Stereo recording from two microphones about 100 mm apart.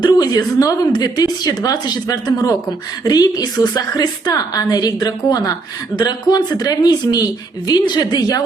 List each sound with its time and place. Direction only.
0.0 s a woman's voice: 40° left (ahead or behind)